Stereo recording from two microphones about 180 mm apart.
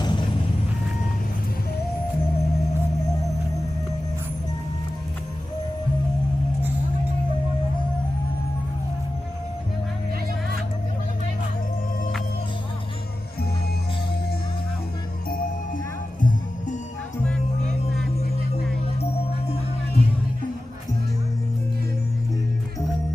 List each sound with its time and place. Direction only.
0.0 s vehicle: 25° left (ahead or behind)